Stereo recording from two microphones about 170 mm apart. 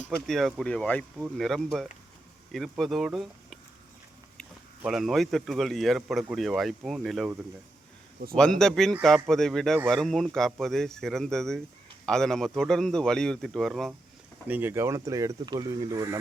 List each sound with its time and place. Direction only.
0.3 s speech: centre (ahead or behind)
4.8 s speech: centre (ahead or behind)
8.4 s speech: 5° left (ahead or behind)
14.4 s speech: 10° right (ahead or behind)